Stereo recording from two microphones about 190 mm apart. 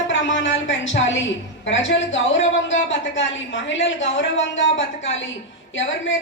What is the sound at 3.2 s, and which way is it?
Speech, 75° left (ahead or behind).